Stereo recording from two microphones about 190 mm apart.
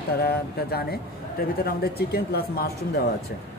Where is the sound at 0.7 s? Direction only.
55° left (ahead or behind).